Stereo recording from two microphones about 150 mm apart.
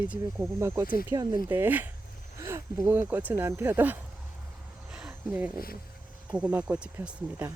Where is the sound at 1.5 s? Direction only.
15° right (ahead or behind).